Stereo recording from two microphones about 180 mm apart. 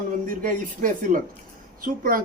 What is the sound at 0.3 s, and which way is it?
A man's voice, 50° right (ahead or behind).